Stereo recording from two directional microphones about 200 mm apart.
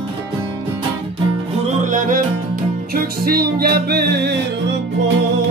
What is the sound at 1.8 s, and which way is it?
Music, 40° right (ahead or behind).